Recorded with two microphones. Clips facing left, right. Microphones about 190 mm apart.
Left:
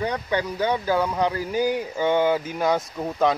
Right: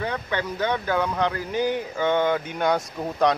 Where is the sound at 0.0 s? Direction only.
15° left (ahead or behind).